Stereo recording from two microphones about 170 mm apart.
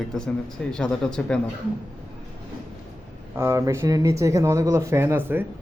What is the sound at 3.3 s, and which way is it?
Speech, 15° right (ahead or behind).